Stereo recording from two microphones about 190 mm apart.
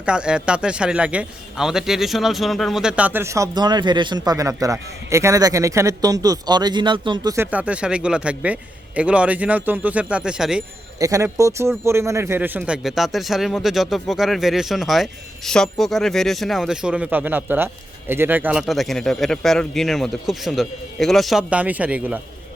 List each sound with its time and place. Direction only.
0.0 s speech: 5° right (ahead or behind); by 7.3 s 25° right (ahead or behind)
7.3 s a man's voice: 5° right (ahead or behind)
11.0 s a man's voice: 15° right (ahead or behind)